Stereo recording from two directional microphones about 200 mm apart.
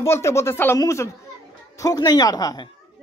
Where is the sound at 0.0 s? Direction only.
15° left (ahead or behind).